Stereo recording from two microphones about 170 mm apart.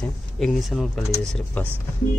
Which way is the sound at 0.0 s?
Centre (ahead or behind).